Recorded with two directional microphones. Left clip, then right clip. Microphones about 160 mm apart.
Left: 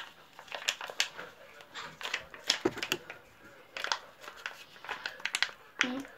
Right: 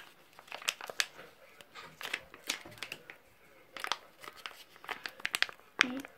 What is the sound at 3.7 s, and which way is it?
Crumpling, 55° right (ahead or behind).